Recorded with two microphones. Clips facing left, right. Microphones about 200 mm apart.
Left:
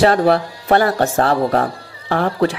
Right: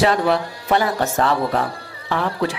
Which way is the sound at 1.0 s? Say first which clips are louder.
Left 4 dB; 35° left (ahead or behind).